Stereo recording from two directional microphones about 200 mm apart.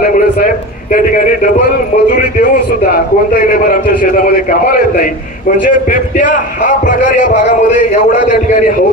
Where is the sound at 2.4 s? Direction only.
50° left (ahead or behind).